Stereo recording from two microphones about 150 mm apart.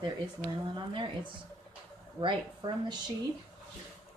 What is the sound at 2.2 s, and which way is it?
Speech, 30° right (ahead or behind).